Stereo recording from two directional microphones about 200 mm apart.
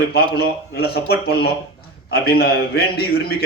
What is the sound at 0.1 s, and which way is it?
A man's voice, 55° left (ahead or behind).